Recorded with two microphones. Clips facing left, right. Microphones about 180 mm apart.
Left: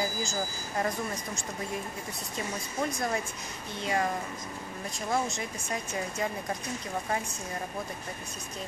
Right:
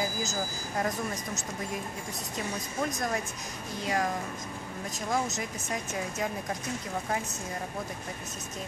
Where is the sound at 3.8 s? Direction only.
Centre (ahead or behind).